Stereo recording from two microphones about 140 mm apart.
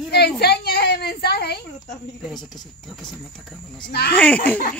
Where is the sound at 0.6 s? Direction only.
90° left.